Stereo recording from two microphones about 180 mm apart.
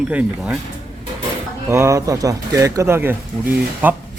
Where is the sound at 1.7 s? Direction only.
15° right (ahead or behind).